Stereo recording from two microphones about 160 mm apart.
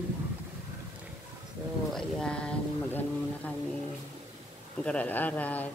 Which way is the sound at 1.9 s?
5° left (ahead or behind).